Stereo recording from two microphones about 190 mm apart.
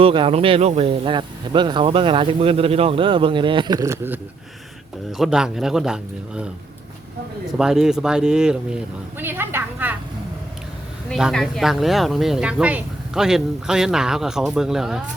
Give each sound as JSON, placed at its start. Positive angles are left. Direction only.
{"t": 0.0, "sound": "speech", "side_deg": -30}
{"t": 5.1, "sound": "speech", "side_deg": 0}
{"t": 7.6, "sound": "speech", "side_deg": -5}
{"t": 11.1, "sound": "speech", "side_deg": 0}